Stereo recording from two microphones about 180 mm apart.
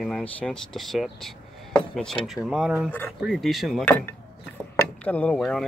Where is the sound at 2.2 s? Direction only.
Centre (ahead or behind).